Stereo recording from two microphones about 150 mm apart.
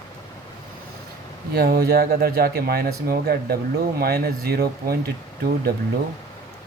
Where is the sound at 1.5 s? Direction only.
90° right.